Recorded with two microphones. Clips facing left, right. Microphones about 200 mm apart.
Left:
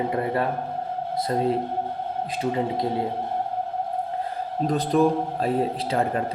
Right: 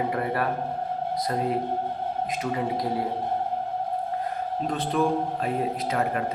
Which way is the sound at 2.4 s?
25° left (ahead or behind).